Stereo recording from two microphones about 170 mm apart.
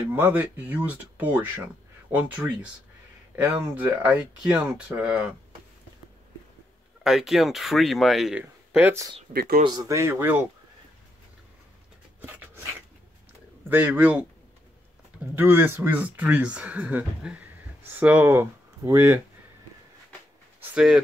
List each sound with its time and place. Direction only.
0.1 s speech: 10° right (ahead or behind)
7.0 s speech: centre (ahead or behind)
9.3 s speech: 60° right (ahead or behind)
9.7 s speech: 20° right (ahead or behind)
12.2 s a sound: 10° right (ahead or behind)
13.7 s speech: 10° right (ahead or behind)
15.3 s speech: 10° right (ahead or behind)
20.6 s a sound: 5° right (ahead or behind)